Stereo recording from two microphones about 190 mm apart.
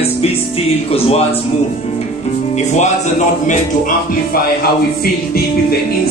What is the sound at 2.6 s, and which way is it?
Music, 40° left (ahead or behind).